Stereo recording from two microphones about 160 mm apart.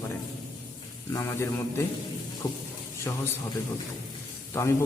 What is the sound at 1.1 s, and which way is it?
Mantra, 15° left (ahead or behind).